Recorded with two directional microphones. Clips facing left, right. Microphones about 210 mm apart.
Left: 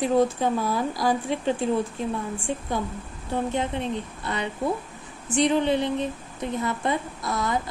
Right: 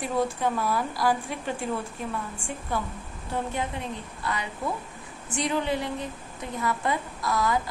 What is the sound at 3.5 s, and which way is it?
A woman's voice, 25° left (ahead or behind).